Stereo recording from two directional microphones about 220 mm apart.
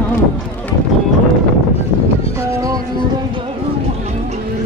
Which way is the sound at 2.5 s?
15° right (ahead or behind).